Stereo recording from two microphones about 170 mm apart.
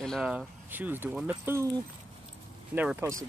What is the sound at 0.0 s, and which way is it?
Speech, centre (ahead or behind).